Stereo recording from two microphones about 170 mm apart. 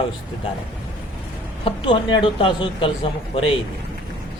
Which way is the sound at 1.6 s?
30° left (ahead or behind).